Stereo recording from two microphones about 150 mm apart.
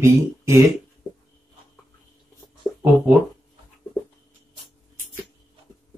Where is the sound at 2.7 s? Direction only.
20° left (ahead or behind).